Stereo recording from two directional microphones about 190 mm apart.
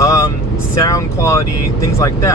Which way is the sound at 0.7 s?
15° left (ahead or behind).